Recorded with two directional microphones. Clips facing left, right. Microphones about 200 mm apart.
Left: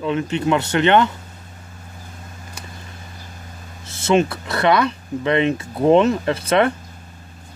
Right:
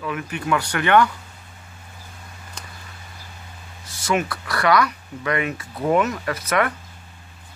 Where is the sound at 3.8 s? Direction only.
25° left (ahead or behind).